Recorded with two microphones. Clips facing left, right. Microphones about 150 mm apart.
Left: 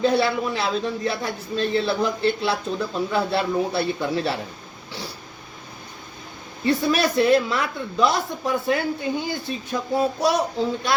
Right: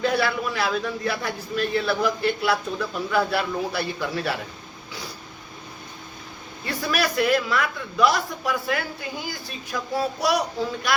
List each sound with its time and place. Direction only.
0.0 s a man's voice: 25° left (ahead or behind)
6.7 s a man's voice: 25° left (ahead or behind)